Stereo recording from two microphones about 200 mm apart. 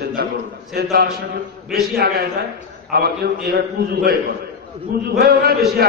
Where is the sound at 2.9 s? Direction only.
50° right (ahead or behind).